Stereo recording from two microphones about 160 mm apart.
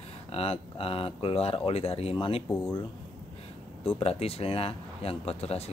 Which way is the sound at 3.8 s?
40° left (ahead or behind).